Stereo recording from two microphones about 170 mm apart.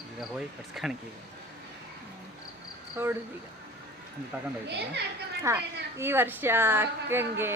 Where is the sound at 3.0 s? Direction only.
10° right (ahead or behind).